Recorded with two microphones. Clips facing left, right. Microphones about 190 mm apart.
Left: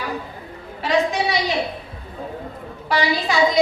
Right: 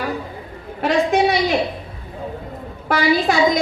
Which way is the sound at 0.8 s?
55° right (ahead or behind).